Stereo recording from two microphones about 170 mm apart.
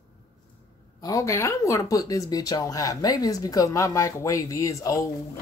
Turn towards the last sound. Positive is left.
turn(degrees=20)  # may be behind; listen again after turning